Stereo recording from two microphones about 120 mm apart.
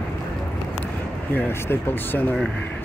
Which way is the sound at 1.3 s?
15° left (ahead or behind).